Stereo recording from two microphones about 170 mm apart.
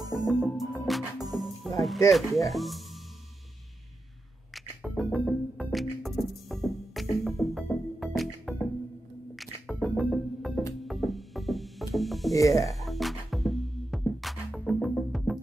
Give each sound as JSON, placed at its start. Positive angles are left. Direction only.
{"t": 0.0, "sound": "music", "side_deg": -20}
{"t": 0.3, "sound": "music", "side_deg": 0}
{"t": 2.0, "sound": "speech", "side_deg": 0}
{"t": 4.6, "sound": "music", "side_deg": 0}
{"t": 12.4, "sound": "music", "side_deg": 20}
{"t": 12.6, "sound": "music", "side_deg": 0}